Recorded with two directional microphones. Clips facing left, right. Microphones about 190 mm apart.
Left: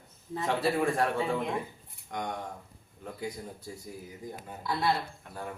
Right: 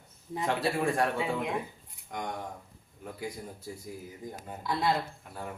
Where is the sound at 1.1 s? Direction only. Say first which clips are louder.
Left 1 dB; 15° right (ahead or behind).